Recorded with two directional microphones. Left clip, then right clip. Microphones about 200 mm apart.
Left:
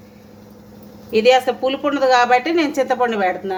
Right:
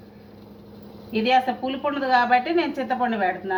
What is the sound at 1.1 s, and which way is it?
A woman's voice, 65° left (ahead or behind).